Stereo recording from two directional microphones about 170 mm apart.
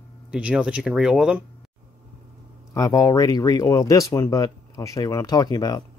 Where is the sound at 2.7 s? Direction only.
20° left (ahead or behind).